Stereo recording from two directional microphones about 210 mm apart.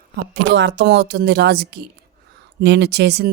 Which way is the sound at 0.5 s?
60° right (ahead or behind).